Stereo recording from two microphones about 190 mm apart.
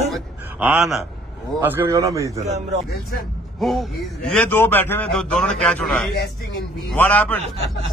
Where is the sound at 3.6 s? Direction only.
Centre (ahead or behind).